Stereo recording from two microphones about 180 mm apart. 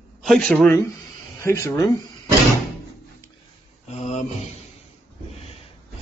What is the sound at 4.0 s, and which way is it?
Mantra, 40° left (ahead or behind).